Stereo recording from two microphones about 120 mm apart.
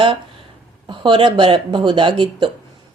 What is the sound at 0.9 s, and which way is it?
Speech, 40° right (ahead or behind).